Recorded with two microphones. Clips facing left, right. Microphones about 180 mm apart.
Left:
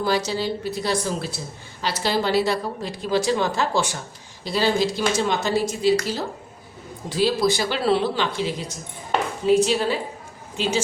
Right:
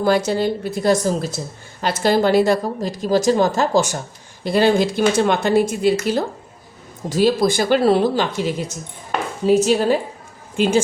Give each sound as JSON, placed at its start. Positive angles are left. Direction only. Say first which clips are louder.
{"t": 0.0, "sound": "a woman's voice", "louder": "right 6 dB", "side_deg": -50}
{"t": 4.4, "sound": "speech", "louder": "right 5 dB", "side_deg": -55}
{"t": 7.1, "sound": "a woman's voice", "louder": "right 4 dB", "side_deg": -45}
{"t": 9.5, "sound": "a woman's voice", "louder": "right 4 dB", "side_deg": -45}